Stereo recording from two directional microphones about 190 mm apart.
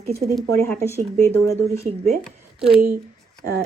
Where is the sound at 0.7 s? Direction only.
10° left (ahead or behind).